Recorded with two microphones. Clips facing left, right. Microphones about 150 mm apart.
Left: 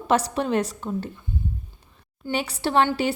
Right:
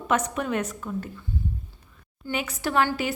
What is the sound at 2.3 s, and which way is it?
Speech, 30° left (ahead or behind).